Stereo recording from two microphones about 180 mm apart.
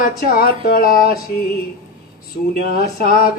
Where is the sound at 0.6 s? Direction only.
55° left (ahead or behind).